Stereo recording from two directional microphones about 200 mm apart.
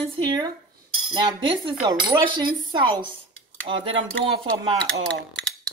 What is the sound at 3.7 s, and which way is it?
Speech, 35° right (ahead or behind).